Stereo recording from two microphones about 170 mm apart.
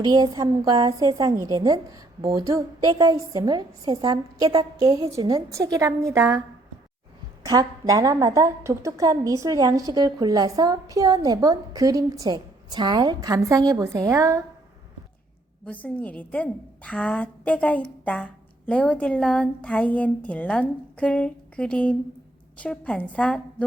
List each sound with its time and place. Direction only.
0.0 s a woman's voice: 20° right (ahead or behind)
7.4 s a woman's voice: 20° right (ahead or behind)
15.6 s a woman's voice: 10° left (ahead or behind)